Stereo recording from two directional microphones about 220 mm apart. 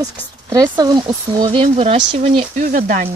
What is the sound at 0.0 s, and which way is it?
A woman's voice, 15° right (ahead or behind).